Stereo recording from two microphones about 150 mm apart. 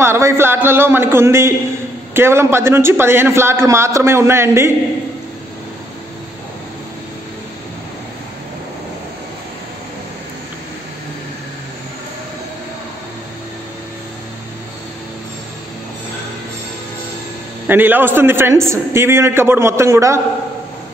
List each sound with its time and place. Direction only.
0.0 s a man's voice: 15° right (ahead or behind)
17.6 s a man's voice: 10° right (ahead or behind)